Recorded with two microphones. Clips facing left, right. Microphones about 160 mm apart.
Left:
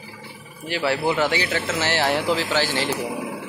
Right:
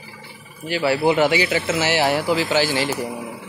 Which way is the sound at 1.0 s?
15° right (ahead or behind).